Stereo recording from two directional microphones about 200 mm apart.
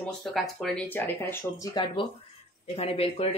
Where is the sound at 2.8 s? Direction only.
30° left (ahead or behind).